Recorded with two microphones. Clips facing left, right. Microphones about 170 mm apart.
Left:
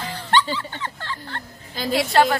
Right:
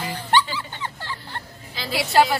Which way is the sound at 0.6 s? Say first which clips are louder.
Left 1 dB; 15° right (ahead or behind).